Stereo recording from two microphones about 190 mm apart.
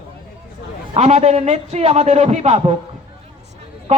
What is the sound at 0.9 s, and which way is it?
A man's voice, 35° right (ahead or behind).